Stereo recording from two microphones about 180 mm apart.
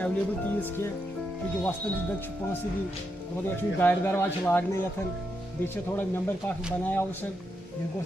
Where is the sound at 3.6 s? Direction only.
10° left (ahead or behind).